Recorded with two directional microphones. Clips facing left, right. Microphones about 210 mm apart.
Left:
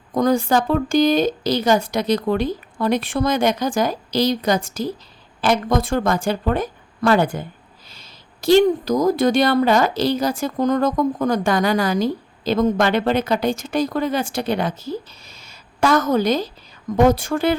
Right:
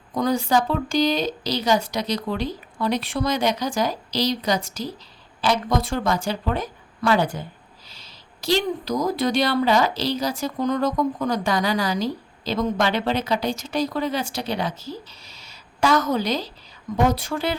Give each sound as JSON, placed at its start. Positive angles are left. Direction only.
{"t": 0.1, "sound": "a woman's voice", "side_deg": 50}